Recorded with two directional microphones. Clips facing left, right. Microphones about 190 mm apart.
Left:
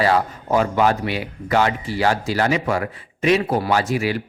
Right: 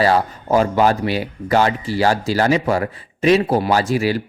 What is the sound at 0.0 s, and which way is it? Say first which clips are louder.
Speech: right 2 dB; 35° right (ahead or behind).